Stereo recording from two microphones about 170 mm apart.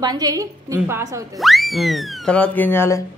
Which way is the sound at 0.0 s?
25° right (ahead or behind).